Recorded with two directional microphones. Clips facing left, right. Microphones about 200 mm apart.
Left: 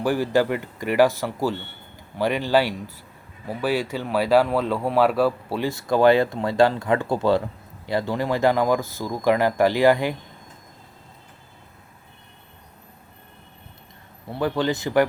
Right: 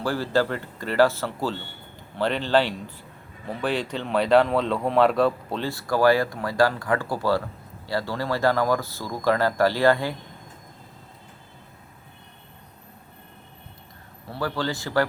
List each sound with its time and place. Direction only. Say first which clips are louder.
0.0 s speech: left 3 dB; 15° left (ahead or behind)
5.6 s speech: left 3 dB; 20° left (ahead or behind)
14.3 s speech: left 5 dB; 20° left (ahead or behind)